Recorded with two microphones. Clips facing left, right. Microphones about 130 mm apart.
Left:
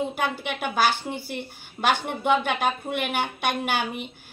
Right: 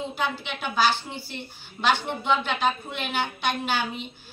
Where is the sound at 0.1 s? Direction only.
55° left (ahead or behind).